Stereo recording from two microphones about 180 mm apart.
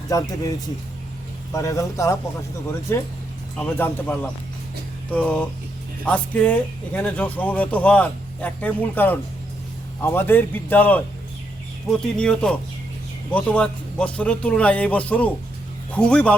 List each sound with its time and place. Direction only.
0.1 s speech: 20° left (ahead or behind)
1.5 s speech: 15° left (ahead or behind)
3.6 s speech: 10° left (ahead or behind)